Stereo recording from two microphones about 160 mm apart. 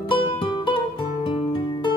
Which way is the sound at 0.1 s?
30° left (ahead or behind).